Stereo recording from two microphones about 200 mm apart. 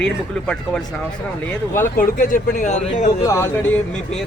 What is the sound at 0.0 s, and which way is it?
Speech, 5° left (ahead or behind).